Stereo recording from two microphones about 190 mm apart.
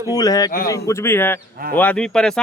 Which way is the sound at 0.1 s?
20° left (ahead or behind).